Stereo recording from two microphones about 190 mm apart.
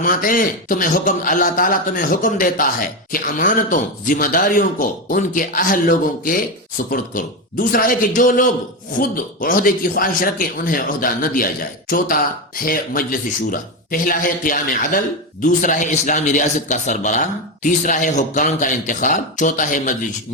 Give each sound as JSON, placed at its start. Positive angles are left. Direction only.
{"t": 0.0, "sound": "speech", "side_deg": 45}